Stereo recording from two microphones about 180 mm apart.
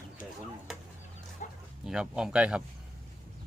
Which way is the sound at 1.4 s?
45° left (ahead or behind).